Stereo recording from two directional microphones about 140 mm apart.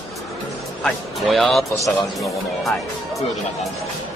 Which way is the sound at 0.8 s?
Centre (ahead or behind).